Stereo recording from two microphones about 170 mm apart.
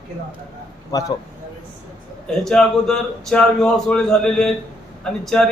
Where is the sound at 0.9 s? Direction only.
20° left (ahead or behind).